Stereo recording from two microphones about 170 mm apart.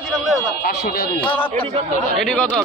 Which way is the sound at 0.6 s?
60° left (ahead or behind).